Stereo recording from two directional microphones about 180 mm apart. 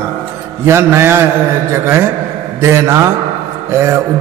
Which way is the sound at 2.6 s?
15° right (ahead or behind).